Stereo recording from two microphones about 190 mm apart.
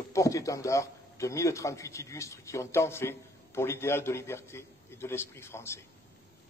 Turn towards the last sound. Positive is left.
turn(degrees=15)  # may be behind; listen again after turning